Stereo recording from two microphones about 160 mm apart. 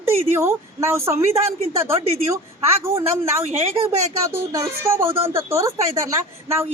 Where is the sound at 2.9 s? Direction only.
15° right (ahead or behind).